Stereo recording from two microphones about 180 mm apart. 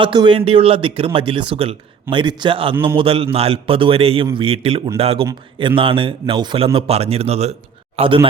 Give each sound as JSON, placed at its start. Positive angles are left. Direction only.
{"t": 0.0, "sound": "a man's voice", "side_deg": -25}